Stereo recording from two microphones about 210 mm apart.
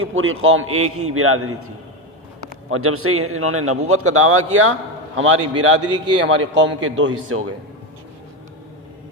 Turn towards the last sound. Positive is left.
turn(degrees=-70)  # may be behind; listen again after turning